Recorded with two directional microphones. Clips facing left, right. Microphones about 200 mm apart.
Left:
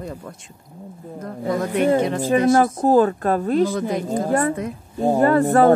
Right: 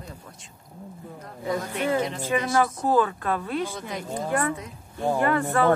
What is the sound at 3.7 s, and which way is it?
Speech, 55° left (ahead or behind).